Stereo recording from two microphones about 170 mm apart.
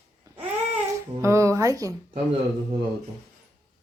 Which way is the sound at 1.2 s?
15° right (ahead or behind).